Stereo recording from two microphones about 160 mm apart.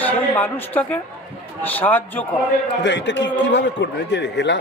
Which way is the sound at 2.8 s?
90° left.